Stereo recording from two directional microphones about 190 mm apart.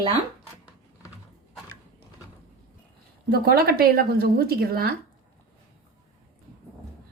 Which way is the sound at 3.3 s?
55° right (ahead or behind).